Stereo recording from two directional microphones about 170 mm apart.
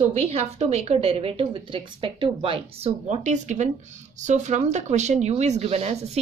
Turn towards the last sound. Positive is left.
turn(degrees=-40)  # may be behind; listen again after turning